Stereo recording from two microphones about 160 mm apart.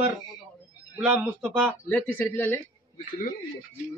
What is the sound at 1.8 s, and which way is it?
Speech, 10° left (ahead or behind).